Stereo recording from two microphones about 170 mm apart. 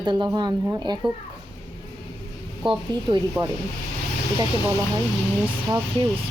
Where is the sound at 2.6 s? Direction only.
30° right (ahead or behind).